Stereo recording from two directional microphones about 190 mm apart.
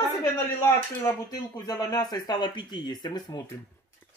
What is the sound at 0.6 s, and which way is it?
Speech, 15° left (ahead or behind).